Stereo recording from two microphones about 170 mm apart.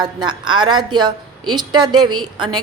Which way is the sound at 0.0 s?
25° right (ahead or behind).